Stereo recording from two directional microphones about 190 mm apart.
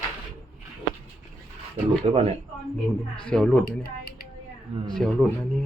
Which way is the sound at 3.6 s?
55° left (ahead or behind).